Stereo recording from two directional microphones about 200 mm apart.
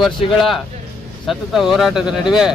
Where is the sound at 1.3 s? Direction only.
Centre (ahead or behind).